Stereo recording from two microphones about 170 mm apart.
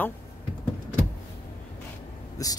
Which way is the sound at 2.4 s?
20° left (ahead or behind).